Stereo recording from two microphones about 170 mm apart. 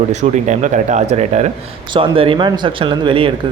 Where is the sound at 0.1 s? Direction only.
45° right (ahead or behind).